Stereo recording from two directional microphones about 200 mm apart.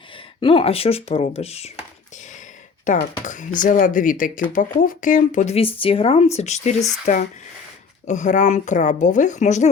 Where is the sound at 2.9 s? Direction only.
40° left (ahead or behind).